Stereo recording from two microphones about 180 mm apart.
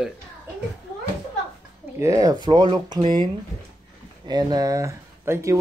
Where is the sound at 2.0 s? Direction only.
20° right (ahead or behind).